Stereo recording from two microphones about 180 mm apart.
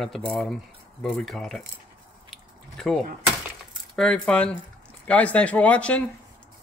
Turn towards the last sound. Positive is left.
turn(degrees=5)  # may be behind; listen again after turning